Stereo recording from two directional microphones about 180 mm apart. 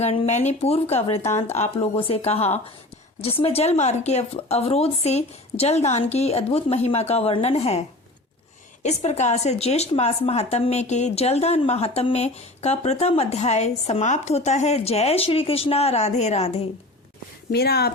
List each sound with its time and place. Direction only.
0.0 s a woman's voice: 35° left (ahead or behind)
17.5 s speech: 60° left (ahead or behind)